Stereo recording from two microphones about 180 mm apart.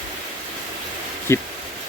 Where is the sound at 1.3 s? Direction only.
15° left (ahead or behind).